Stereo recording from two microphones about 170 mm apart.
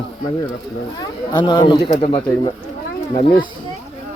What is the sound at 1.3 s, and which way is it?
Speech, 25° left (ahead or behind).